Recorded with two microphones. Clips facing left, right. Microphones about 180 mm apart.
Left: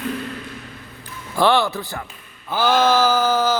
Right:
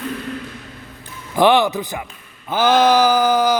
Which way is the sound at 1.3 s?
15° right (ahead or behind).